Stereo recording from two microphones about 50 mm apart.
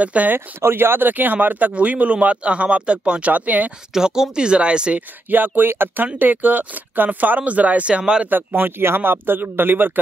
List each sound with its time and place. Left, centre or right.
0.0 s a man's voice: right
0.6 s a man's voice: right
3.9 s a man's voice: centre
5.3 s speech: right; by 8.3 s centre
8.5 s speech: right